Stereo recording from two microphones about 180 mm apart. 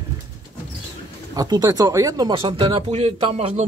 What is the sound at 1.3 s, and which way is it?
Speech, 20° right (ahead or behind).